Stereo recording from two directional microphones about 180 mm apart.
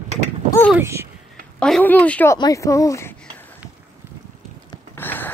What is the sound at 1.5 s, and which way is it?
Speech, 5° left (ahead or behind).